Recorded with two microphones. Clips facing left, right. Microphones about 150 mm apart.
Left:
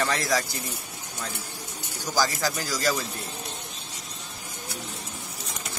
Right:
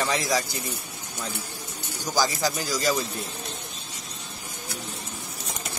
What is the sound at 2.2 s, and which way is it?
Speech, 15° right (ahead or behind).